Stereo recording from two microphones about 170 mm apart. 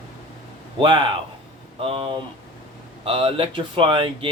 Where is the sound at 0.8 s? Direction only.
30° right (ahead or behind).